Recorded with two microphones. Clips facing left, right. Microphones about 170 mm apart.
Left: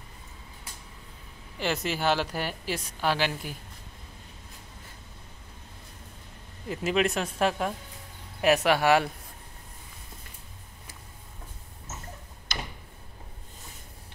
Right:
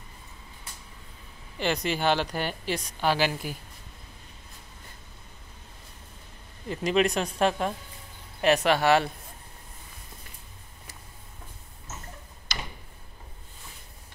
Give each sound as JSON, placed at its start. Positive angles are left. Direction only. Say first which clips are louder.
{"t": 1.6, "sound": "speech", "louder": "right 2 dB", "side_deg": 5}
{"t": 6.7, "sound": "speech", "louder": "right 2 dB", "side_deg": 5}